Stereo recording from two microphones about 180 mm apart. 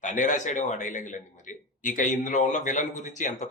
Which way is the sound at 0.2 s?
45° left (ahead or behind).